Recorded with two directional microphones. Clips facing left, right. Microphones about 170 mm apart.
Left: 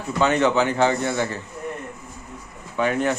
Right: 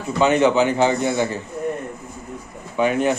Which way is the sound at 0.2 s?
20° right (ahead or behind).